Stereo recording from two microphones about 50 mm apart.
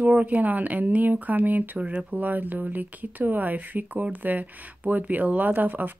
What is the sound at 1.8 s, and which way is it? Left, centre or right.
Speech, right.